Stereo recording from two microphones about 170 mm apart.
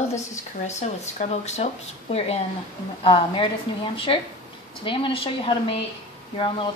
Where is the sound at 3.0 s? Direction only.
30° left (ahead or behind).